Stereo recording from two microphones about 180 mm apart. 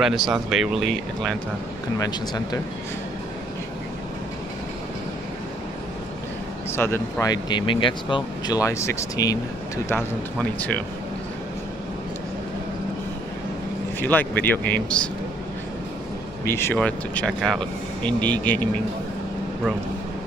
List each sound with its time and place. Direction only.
0.0 s speech: centre (ahead or behind)
2.0 s speech: 20° left (ahead or behind)
6.7 s speech: 15° left (ahead or behind)
13.9 s speech: 10° left (ahead or behind)
16.4 s speech: 15° left (ahead or behind)